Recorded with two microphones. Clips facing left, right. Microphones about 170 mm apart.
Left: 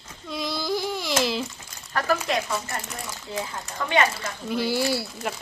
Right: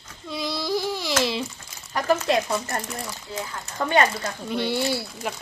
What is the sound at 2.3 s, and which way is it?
Speech, 35° right (ahead or behind).